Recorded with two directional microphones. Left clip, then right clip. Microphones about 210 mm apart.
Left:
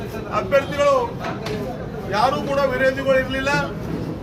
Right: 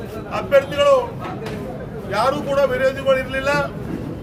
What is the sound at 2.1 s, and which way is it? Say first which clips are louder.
A man's voice: right 1 dB; 30° right (ahead or behind).